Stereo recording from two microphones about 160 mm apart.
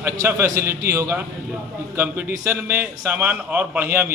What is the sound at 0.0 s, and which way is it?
A man's voice, 15° right (ahead or behind).